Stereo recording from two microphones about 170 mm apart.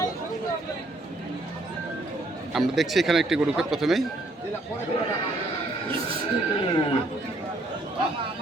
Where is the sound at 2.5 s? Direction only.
Centre (ahead or behind).